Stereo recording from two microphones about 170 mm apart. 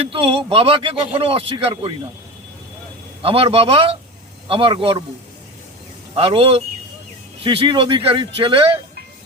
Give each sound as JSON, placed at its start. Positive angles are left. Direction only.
{"t": 0.0, "sound": "speech", "side_deg": -30}
{"t": 3.2, "sound": "speech", "side_deg": -35}
{"t": 6.1, "sound": "speech", "side_deg": -35}